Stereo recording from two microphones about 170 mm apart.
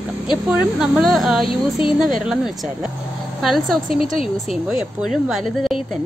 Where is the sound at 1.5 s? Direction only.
30° left (ahead or behind).